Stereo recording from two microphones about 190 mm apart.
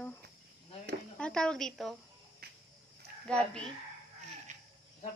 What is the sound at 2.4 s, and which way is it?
Cricket, 55° right (ahead or behind).